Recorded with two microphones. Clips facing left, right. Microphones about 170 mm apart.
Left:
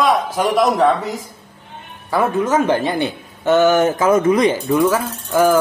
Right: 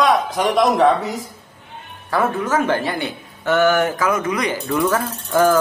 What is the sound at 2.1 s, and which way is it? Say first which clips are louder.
A man's voice: left 3 dB; 15° left (ahead or behind).